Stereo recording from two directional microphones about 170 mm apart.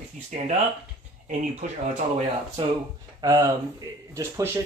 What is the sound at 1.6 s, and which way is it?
Speech, 50° right (ahead or behind).